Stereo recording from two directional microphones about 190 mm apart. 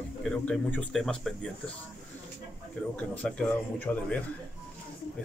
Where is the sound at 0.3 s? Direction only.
5° left (ahead or behind).